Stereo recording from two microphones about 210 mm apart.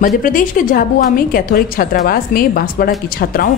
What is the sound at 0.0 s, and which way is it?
A woman's voice, 40° left (ahead or behind).